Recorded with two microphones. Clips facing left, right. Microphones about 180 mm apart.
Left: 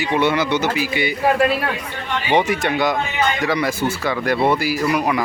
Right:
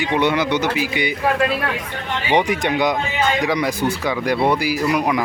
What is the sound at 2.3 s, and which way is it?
Speech, 15° right (ahead or behind).